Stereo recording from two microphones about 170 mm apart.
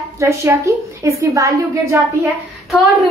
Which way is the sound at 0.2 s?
15° right (ahead or behind).